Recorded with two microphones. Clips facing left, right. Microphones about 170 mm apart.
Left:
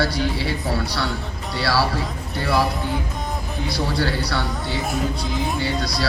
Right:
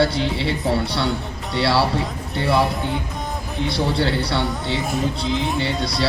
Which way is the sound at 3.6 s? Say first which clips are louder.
Right 3 dB; 25° right (ahead or behind).